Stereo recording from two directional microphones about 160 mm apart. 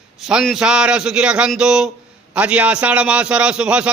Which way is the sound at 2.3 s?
10° right (ahead or behind).